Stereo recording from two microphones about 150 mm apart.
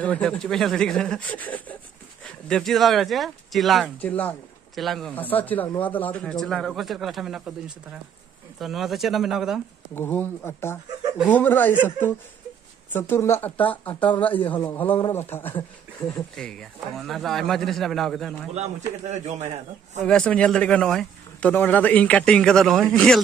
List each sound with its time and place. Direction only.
0.0 s speech: 5° left (ahead or behind)
5.1 s speech: 10° left (ahead or behind)
9.9 s speech: 15° left (ahead or behind)
18.5 s a man's voice: 45° right (ahead or behind)
20.1 s speech: 5° left (ahead or behind)